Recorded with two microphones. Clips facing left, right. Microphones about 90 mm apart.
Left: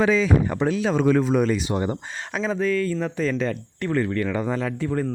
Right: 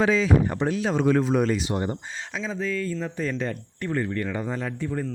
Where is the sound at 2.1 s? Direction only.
60° left (ahead or behind).